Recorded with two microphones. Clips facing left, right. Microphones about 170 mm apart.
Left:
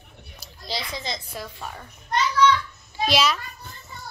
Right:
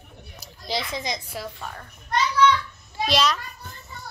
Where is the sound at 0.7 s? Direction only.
20° right (ahead or behind).